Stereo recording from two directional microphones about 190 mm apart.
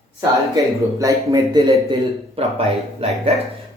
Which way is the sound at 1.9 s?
30° right (ahead or behind).